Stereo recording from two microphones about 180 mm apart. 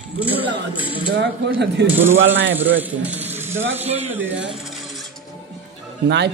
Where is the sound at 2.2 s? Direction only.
90° right.